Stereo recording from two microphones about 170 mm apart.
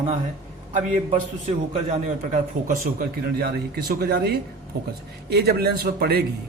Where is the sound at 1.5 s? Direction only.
45° right (ahead or behind).